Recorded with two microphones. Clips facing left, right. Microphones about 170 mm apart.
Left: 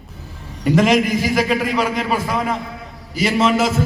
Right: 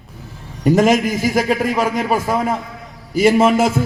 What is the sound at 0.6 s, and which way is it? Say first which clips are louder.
A man's voice: right 2 dB; 45° right (ahead or behind).